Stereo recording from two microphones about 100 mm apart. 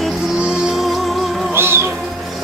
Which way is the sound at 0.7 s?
Centre (ahead or behind).